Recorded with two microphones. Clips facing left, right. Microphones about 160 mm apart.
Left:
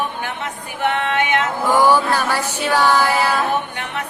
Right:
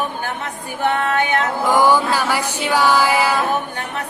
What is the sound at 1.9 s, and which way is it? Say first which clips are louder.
Music: even; 10° right (ahead or behind).